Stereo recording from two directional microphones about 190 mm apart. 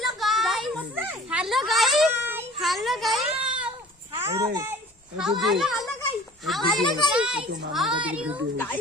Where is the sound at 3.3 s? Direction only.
25° right (ahead or behind).